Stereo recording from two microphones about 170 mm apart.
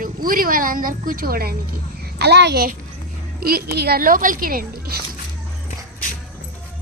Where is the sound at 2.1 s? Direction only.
75° right (ahead or behind).